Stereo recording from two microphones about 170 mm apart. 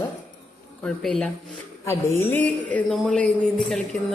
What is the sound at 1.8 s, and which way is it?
Speech, 15° left (ahead or behind).